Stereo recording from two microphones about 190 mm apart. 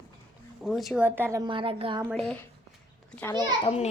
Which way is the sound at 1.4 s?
25° right (ahead or behind).